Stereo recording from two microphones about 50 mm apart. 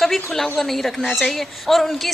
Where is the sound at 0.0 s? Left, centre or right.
Centre.